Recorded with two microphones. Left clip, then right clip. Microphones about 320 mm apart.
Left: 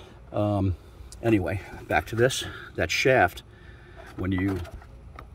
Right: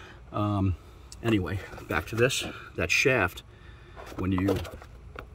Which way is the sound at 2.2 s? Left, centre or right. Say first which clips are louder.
Left 2 dB; left.